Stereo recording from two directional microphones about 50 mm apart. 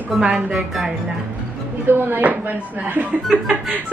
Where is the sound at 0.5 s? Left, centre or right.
Centre.